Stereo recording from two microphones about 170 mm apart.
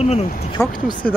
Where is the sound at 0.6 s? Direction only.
5° left (ahead or behind).